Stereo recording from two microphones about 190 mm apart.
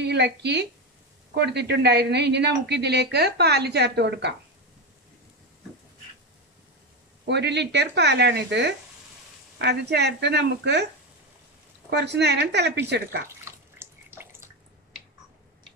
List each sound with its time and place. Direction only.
0.0 s a woman's voice: 65° right (ahead or behind)
7.2 s speech: 60° right (ahead or behind)
11.9 s speech: 60° right (ahead or behind)
13.5 s bathtub: 15° right (ahead or behind)